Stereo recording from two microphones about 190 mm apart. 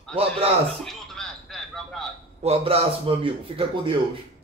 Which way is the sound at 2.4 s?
35° right (ahead or behind).